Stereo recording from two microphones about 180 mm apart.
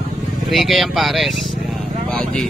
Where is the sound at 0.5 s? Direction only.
Centre (ahead or behind).